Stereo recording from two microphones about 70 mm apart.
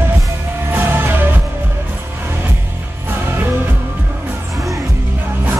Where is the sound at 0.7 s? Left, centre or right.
Right.